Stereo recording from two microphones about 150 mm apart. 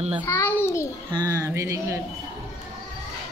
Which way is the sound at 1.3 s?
20° right (ahead or behind).